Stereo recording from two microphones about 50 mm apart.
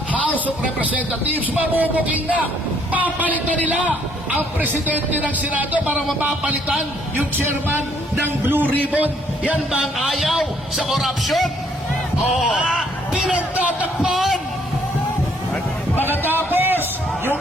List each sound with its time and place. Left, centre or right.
1.4 s a man's voice: right
7.3 s speech: right
8.6 s a man's voice: left
8.9 s a man's voice: right
9.8 s speech: centre
12.7 s a sound: centre
13.3 s a man's voice: right
14.1 s a man's voice: centre
16.3 s a sound: right